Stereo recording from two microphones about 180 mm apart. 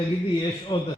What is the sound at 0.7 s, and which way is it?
Speech, 25° left (ahead or behind).